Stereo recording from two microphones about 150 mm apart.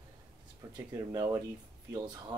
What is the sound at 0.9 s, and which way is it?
Speech, 25° right (ahead or behind).